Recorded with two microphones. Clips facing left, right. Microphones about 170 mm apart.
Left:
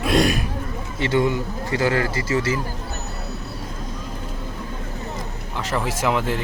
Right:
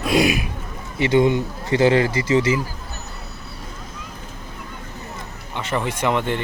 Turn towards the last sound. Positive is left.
turn(degrees=0)  # may be behind; listen again after turning